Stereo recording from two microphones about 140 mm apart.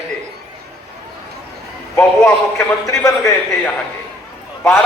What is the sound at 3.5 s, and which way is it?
Speech, 10° left (ahead or behind).